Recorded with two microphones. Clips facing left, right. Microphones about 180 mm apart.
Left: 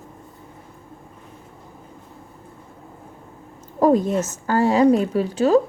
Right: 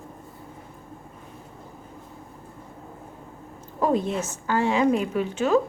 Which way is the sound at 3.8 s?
40° left (ahead or behind).